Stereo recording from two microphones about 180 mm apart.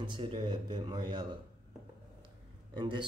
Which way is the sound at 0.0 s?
25° right (ahead or behind).